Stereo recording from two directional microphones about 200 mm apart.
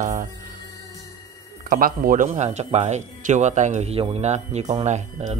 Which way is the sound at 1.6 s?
45° right (ahead or behind).